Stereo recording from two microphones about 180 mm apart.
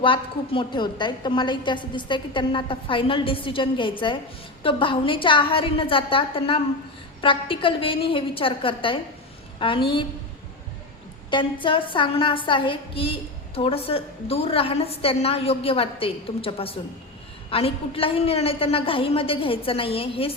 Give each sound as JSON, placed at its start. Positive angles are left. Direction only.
{"t": 0.0, "sound": "a woman's voice", "side_deg": 30}
{"t": 11.3, "sound": "a woman's voice", "side_deg": 25}